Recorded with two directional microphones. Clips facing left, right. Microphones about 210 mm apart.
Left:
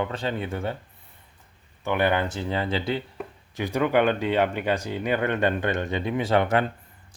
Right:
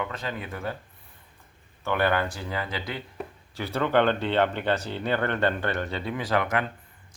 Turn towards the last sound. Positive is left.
turn(degrees=30)  # may be behind; listen again after turning